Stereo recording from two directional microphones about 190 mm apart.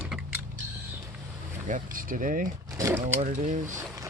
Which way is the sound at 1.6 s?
45° right (ahead or behind).